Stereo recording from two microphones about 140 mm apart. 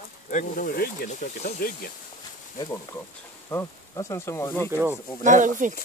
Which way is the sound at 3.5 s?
20° left (ahead or behind).